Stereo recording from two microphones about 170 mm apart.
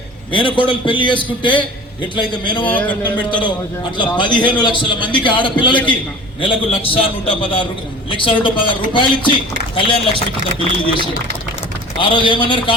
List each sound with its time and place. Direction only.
0.3 s a man's voice: 30° left (ahead or behind)
2.6 s speech: 10° left (ahead or behind)
3.0 s a man's voice: 30° left (ahead or behind)
11.9 s a man's voice: 30° left (ahead or behind)